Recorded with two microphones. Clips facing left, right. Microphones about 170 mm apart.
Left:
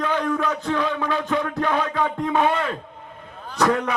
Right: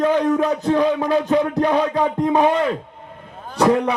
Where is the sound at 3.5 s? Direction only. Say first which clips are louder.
Right 4 dB; 30° right (ahead or behind).